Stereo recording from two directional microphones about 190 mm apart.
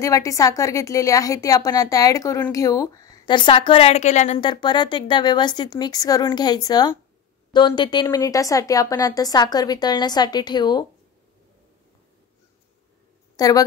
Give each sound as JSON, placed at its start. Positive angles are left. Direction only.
{"t": 0.0, "sound": "a woman's voice", "side_deg": 15}
{"t": 4.4, "sound": "a woman's voice", "side_deg": 25}
{"t": 13.4, "sound": "a woman's voice", "side_deg": 20}